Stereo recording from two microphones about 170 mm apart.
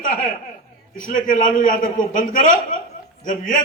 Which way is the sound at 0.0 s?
50° left (ahead or behind).